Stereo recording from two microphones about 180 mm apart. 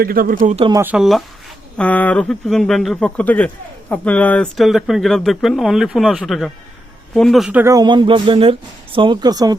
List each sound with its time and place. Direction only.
0.0 s speech: 55° right (ahead or behind)
0.8 s speech: 5° right (ahead or behind)
1.8 s speech: 10° left (ahead or behind)
7.6 s speech: 20° right (ahead or behind)